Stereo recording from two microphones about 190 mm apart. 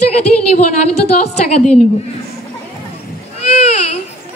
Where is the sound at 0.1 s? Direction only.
35° left (ahead or behind).